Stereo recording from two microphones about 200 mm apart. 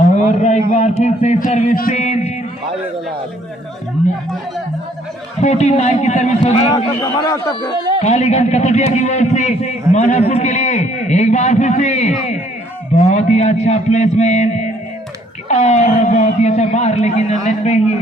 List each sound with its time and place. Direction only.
0.3 s speech: 35° left (ahead or behind)
5.4 s speech: 35° left (ahead or behind)
6.7 s a man's voice: 20° left (ahead or behind)
8.0 s speech: 35° left (ahead or behind)